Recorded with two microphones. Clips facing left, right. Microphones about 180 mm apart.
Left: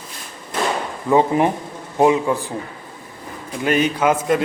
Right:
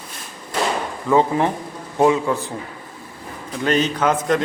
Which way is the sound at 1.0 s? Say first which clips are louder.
Left 1 dB; 15° left (ahead or behind).